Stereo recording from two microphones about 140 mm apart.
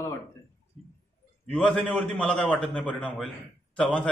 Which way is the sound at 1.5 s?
5° left (ahead or behind).